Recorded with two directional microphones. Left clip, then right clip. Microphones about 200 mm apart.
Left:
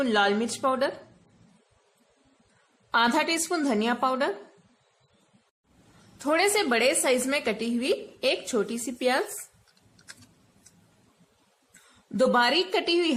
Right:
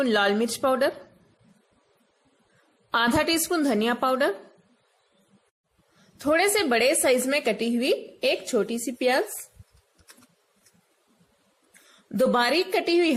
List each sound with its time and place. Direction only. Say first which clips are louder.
0.0 s a woman's voice: right 1 dB; 20° right (ahead or behind)
2.9 s a woman's voice: right 1 dB; 20° right (ahead or behind)
6.1 s a woman's voice: right 2 dB; 10° right (ahead or behind)
12.1 s a woman's voice: even; 15° right (ahead or behind)